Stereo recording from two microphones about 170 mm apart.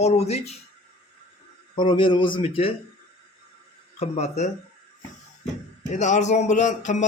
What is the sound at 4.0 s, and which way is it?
A man's voice, 40° left (ahead or behind).